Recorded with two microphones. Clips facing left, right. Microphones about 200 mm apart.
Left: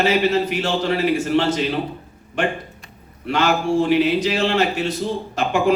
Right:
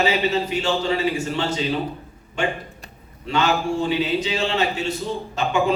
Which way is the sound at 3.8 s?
70° left (ahead or behind).